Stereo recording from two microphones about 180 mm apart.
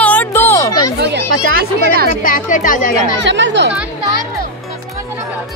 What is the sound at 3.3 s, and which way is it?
Speech, 85° right.